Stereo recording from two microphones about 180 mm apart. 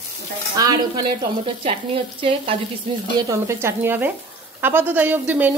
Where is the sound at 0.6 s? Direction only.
20° right (ahead or behind).